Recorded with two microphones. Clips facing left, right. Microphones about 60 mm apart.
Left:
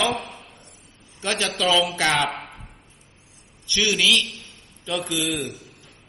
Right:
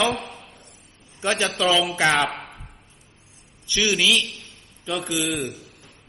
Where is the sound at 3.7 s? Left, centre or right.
Centre.